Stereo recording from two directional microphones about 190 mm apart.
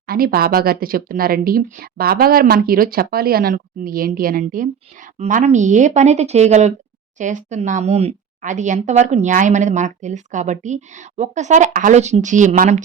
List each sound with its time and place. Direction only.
0.1 s speech: 50° right (ahead or behind)
5.1 s speech: 35° right (ahead or behind)